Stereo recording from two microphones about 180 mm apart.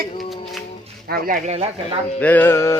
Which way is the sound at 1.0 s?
55° right (ahead or behind).